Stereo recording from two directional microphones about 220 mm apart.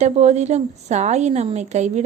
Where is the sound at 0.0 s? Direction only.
30° right (ahead or behind).